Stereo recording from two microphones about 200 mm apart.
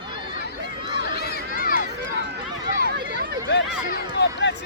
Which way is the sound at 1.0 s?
55° left (ahead or behind).